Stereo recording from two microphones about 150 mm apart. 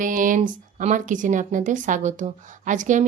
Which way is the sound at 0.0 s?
60° right (ahead or behind).